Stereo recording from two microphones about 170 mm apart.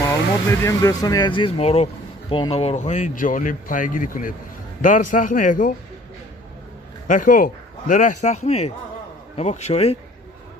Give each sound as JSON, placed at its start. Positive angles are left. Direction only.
{"t": 0.0, "sound": "speech", "side_deg": 15}
{"t": 7.1, "sound": "speech", "side_deg": 50}